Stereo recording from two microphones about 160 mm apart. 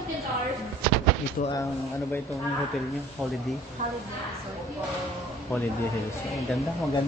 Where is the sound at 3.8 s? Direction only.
50° right (ahead or behind).